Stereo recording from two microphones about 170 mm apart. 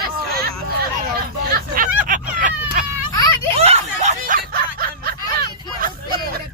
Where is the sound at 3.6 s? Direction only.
35° right (ahead or behind).